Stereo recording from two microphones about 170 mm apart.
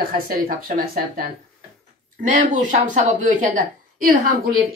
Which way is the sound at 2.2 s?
50° right (ahead or behind).